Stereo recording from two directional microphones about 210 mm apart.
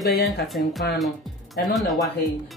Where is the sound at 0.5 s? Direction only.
55° left (ahead or behind).